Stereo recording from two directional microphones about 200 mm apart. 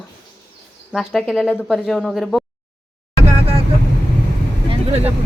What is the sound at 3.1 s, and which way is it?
Vehicle, 30° right (ahead or behind).